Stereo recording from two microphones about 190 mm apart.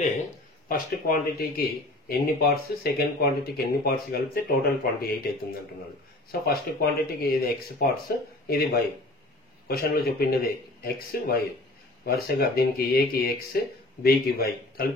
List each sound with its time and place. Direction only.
0.7 s speech: 45° left (ahead or behind)
6.3 s speech: 55° left (ahead or behind)